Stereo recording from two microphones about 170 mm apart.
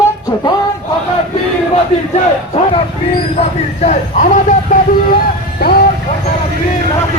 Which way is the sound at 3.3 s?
40° left (ahead or behind).